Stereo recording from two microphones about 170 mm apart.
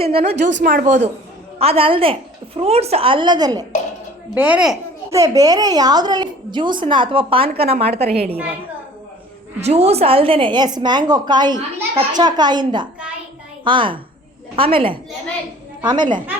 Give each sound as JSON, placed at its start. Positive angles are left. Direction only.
{"t": 0.0, "sound": "a woman's voice", "side_deg": -35}
{"t": 0.4, "sound": "speech", "side_deg": -90}
{"t": 0.7, "sound": "a man's voice", "side_deg": -55}
{"t": 1.5, "sound": "a woman's voice", "side_deg": -35}
{"t": 4.4, "sound": "a child's voice", "side_deg": -10}
{"t": 5.1, "sound": "speech", "side_deg": -20}
{"t": 9.6, "sound": "a woman's voice", "side_deg": -40}